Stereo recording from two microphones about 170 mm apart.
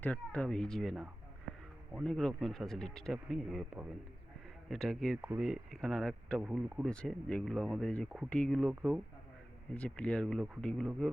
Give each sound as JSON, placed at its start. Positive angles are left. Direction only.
{"t": 0.0, "sound": "speech", "side_deg": 10}
{"t": 6.4, "sound": "speech", "side_deg": -5}
{"t": 6.8, "sound": "speech", "side_deg": 5}
{"t": 9.7, "sound": "speech", "side_deg": 5}